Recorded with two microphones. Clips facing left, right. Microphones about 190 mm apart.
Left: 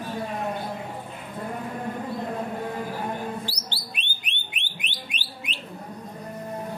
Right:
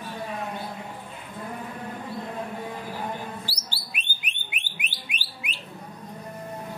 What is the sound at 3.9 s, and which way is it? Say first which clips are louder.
Alarm: even; 10° right (ahead or behind).